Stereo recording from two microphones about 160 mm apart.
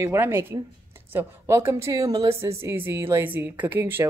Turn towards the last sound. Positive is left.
turn(degrees=-15)  # may be behind; listen again after turning